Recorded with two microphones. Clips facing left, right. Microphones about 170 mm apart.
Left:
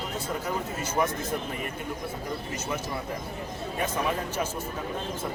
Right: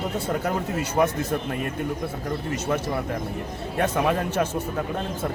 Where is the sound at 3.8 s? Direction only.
65° right (ahead or behind).